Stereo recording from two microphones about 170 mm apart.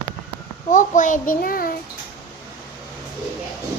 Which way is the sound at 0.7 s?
50° left (ahead or behind).